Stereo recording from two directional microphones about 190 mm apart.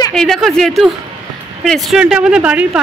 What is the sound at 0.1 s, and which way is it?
A woman's voice, centre (ahead or behind).